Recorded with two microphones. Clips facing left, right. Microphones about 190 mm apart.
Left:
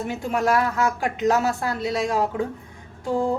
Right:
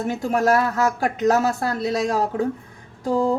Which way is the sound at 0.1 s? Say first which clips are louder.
Right 3 dB; 40° right (ahead or behind).